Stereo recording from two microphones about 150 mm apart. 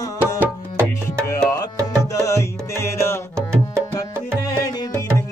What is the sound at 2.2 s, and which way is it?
Music, 20° left (ahead or behind).